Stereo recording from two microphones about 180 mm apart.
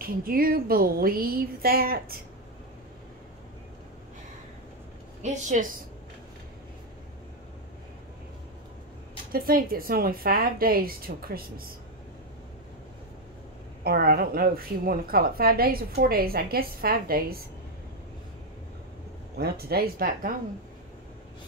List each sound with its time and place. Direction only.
0.0 s a woman's voice: 55° right (ahead or behind)
5.2 s a woman's voice: 45° right (ahead or behind)
9.3 s a woman's voice: 55° right (ahead or behind)
13.8 s a woman's voice: 60° right (ahead or behind)
19.3 s a woman's voice: 60° right (ahead or behind)